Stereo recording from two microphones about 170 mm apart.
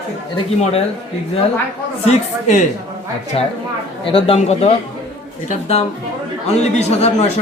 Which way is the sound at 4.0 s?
35° left (ahead or behind).